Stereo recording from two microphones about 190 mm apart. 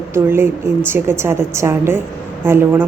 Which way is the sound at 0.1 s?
10° right (ahead or behind).